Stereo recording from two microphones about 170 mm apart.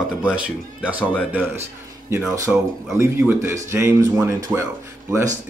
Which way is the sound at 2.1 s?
10° right (ahead or behind).